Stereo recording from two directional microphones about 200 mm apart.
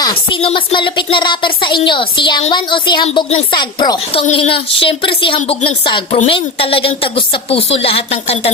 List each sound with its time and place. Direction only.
0.3 s a woman's voice: 25° left (ahead or behind)